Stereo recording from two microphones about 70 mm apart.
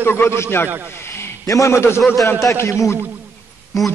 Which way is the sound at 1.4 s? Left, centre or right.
Left.